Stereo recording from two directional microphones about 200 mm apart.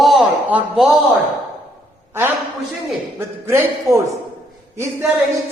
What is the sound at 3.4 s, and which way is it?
A man's voice, 10° right (ahead or behind).